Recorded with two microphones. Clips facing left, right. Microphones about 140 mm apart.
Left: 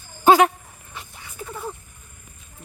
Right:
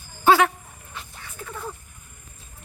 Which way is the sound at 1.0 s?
10° left (ahead or behind).